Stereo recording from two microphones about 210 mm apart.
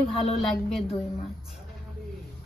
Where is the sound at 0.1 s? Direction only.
25° left (ahead or behind).